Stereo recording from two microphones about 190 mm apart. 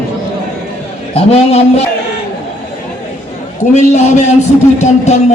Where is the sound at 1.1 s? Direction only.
35° left (ahead or behind).